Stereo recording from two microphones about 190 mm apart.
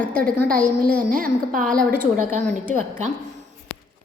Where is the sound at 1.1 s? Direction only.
45° right (ahead or behind).